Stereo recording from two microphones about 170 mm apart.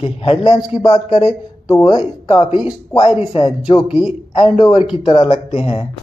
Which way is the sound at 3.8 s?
5° right (ahead or behind).